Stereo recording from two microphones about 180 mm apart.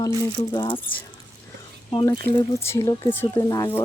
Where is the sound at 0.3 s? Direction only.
25° left (ahead or behind).